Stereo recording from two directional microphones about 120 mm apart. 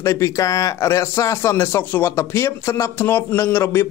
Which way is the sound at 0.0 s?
25° left (ahead or behind).